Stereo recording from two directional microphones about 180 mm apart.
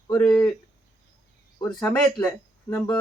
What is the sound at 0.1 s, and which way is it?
Speech, 15° left (ahead or behind).